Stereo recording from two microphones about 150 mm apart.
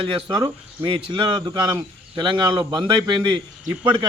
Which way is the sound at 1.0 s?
35° right (ahead or behind).